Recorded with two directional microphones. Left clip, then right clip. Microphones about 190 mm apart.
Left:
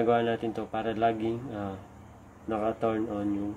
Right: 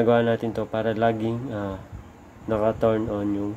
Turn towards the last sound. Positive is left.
turn(degrees=-25)  # may be behind; listen again after turning